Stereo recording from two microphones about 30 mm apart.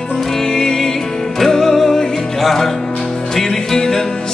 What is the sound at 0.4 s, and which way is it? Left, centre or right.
Music, left.